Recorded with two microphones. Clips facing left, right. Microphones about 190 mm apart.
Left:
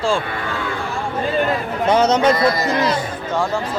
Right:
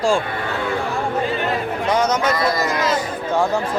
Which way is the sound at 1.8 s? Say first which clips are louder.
Left 5 dB; 30° left (ahead or behind).